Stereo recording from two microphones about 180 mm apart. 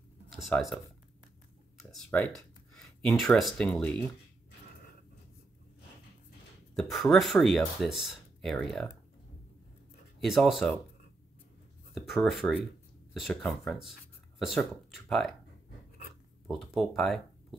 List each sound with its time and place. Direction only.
0.3 s speech: centre (ahead or behind)
1.8 s speech: centre (ahead or behind)
6.7 s speech: centre (ahead or behind)
10.2 s speech: centre (ahead or behind)
11.9 s speech: centre (ahead or behind)
16.4 s speech: centre (ahead or behind)